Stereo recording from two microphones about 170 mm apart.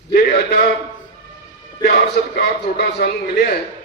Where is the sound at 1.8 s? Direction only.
65° left (ahead or behind).